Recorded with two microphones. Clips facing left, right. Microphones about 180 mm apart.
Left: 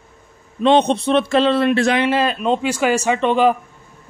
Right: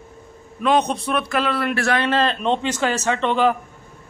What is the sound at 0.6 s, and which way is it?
A man's voice, 25° left (ahead or behind).